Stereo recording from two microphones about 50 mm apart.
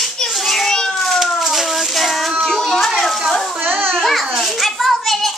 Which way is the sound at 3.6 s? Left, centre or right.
Right.